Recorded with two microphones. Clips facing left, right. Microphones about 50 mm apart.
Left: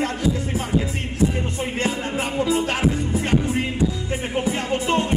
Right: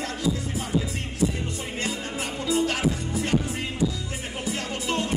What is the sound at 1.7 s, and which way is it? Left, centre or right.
Music, left.